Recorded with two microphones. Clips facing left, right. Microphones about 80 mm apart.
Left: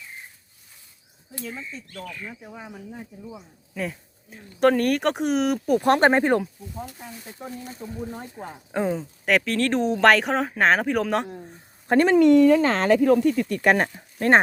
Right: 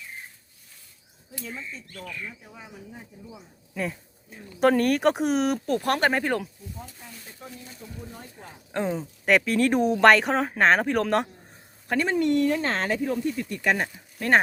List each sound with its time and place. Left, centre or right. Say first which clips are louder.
1.5 s speech: left 2 dB; left
2.4 s speech: left 5 dB; left
3.8 s speech: even; centre
5.6 s speech: left 5 dB; centre
7.7 s speech: left 8 dB; left
8.7 s speech: left 3 dB; centre
9.0 s speech: even; centre
12.0 s speech: left 8 dB; left
14.2 s speech: left 3 dB; left